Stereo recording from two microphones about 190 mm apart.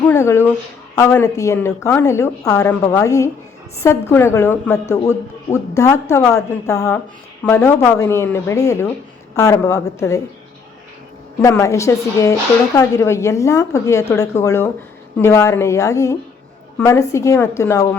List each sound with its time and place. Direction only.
0.0 s a man's voice: 15° left (ahead or behind)
11.3 s a man's voice: 15° left (ahead or behind)